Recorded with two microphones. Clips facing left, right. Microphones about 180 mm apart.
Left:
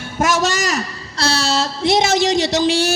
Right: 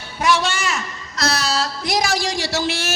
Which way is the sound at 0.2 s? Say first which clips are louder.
Left 2 dB; 45° left (ahead or behind).